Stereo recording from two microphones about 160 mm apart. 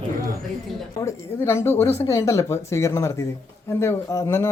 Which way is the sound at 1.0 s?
15° left (ahead or behind).